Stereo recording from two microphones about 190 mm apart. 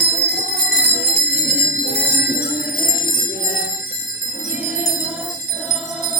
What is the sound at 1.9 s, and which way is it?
Jingle bell, 55° left (ahead or behind).